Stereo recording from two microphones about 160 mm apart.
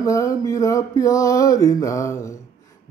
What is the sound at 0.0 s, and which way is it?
Speech, 20° left (ahead or behind).